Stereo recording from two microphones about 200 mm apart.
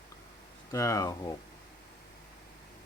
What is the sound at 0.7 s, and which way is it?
Speech, 15° left (ahead or behind).